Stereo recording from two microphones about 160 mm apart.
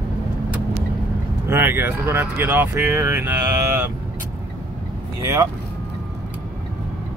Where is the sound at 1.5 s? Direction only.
15° right (ahead or behind).